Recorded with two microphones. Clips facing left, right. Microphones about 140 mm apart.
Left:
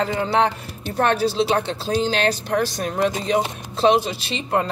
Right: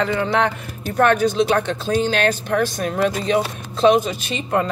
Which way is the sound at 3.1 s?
20° left (ahead or behind).